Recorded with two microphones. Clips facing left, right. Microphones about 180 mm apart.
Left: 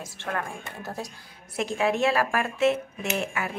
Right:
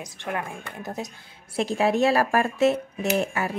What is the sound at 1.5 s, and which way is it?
Speech, 35° right (ahead or behind).